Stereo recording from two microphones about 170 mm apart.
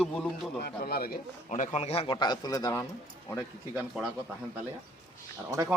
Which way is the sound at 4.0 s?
Centre (ahead or behind).